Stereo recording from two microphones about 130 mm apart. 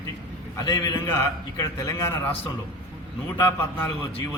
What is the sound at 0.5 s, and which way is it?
Speech, 30° left (ahead or behind).